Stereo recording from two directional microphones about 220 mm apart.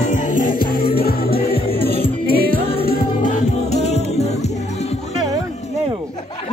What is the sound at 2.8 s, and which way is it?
Music, 40° left (ahead or behind).